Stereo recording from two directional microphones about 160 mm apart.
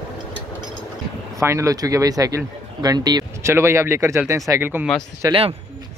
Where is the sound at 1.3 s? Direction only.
20° right (ahead or behind).